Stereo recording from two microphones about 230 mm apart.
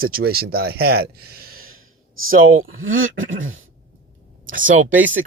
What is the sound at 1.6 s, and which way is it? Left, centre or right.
Speech, right.